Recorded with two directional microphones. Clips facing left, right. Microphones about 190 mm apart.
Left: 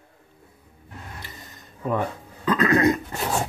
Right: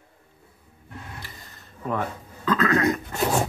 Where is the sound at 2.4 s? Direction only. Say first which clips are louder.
Left 2 dB; 20° left (ahead or behind).